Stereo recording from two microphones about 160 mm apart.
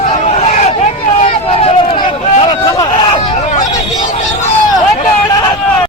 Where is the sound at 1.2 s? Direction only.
40° left (ahead or behind).